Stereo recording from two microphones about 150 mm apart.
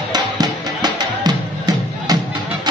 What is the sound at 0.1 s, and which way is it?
Music, 25° right (ahead or behind).